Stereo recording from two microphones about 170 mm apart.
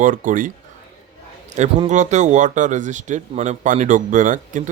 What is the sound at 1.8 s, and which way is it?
Speech, 45° right (ahead or behind).